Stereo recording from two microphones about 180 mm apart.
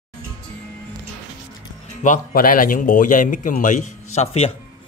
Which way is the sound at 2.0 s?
50° left (ahead or behind).